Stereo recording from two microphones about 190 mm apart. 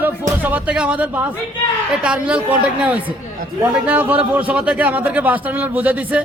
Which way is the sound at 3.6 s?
10° right (ahead or behind).